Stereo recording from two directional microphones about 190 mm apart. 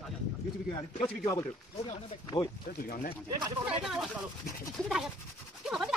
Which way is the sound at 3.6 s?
Centre (ahead or behind).